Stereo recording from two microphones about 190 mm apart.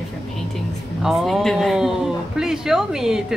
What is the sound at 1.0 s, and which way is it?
A man's voice, centre (ahead or behind).